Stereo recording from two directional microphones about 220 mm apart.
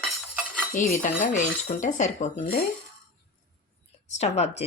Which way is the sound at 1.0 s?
35° left (ahead or behind).